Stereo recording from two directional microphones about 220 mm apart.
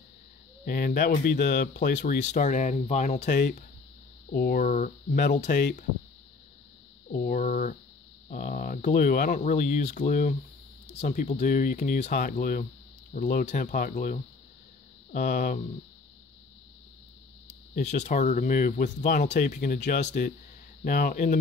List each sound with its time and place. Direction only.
0.7 s speech: 40° left (ahead or behind)
2.2 s speech: 30° left (ahead or behind)
3.3 s speech: 45° left (ahead or behind)
7.1 s speech: 40° left (ahead or behind)
17.7 s speech: 35° left (ahead or behind)